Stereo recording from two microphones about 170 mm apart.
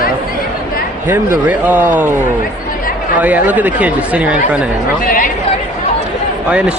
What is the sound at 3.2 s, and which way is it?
Speech, 10° right (ahead or behind).